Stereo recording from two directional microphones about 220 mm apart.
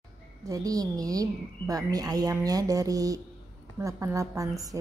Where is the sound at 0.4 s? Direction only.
15° right (ahead or behind).